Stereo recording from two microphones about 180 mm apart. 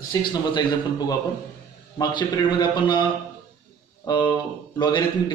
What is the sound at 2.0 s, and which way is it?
A man's voice, 25° left (ahead or behind).